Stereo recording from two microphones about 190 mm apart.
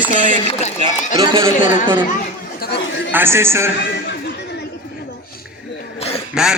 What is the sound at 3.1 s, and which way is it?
Speech, 10° right (ahead or behind).